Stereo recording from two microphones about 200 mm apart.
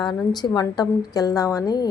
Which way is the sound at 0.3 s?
20° left (ahead or behind).